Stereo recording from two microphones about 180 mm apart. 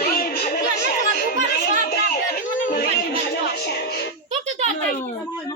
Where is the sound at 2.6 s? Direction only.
50° left (ahead or behind).